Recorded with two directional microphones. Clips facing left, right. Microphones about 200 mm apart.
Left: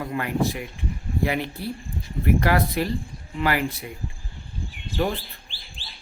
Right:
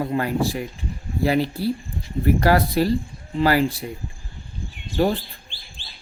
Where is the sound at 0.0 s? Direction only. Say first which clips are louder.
Right 3 dB; 35° right (ahead or behind).